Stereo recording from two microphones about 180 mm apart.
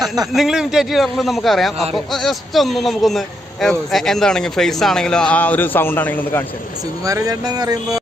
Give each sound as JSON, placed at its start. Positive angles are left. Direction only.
{"t": 0.3, "sound": "a man's voice", "side_deg": 0}
{"t": 7.0, "sound": "speech", "side_deg": -20}